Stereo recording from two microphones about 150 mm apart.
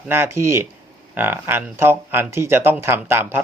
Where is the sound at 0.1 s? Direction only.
15° right (ahead or behind).